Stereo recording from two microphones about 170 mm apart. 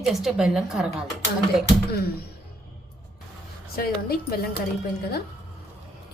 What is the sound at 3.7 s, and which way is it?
Speech, 60° left (ahead or behind).